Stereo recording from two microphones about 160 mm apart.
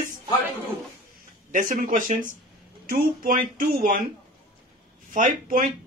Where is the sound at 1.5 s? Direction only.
55° right (ahead or behind).